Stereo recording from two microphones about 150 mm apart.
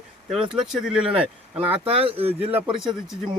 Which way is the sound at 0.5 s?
5° right (ahead or behind).